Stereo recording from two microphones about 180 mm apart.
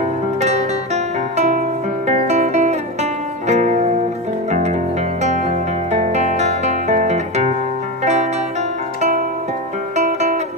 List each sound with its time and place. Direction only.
0.0 s music: 40° right (ahead or behind)
9.9 s music: 40° right (ahead or behind)